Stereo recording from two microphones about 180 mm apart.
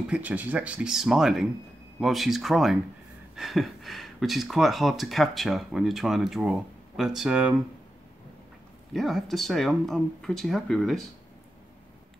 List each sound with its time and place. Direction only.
0.1 s speech: 10° right (ahead or behind)
8.9 s speech: centre (ahead or behind)